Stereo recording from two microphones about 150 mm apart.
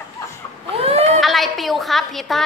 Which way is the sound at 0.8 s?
45° right (ahead or behind).